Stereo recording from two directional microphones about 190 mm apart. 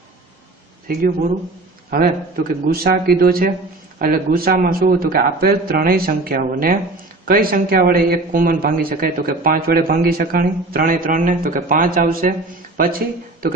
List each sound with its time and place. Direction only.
1.9 s a man's voice: 50° right (ahead or behind)